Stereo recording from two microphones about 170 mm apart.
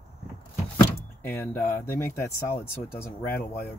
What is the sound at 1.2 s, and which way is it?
Speech, 15° left (ahead or behind).